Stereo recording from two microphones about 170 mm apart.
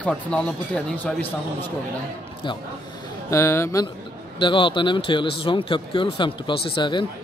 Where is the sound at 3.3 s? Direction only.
15° left (ahead or behind).